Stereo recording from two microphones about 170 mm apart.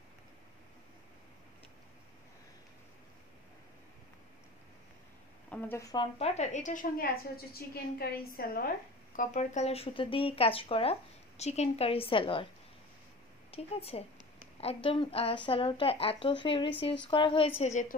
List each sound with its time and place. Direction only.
5.5 s speech: 10° left (ahead or behind)
6.1 s a woman's voice: 40° left (ahead or behind)
7.5 s a woman's voice: 65° left (ahead or behind); by 12.4 s 30° left (ahead or behind)
13.5 s a woman's voice: 35° left (ahead or behind)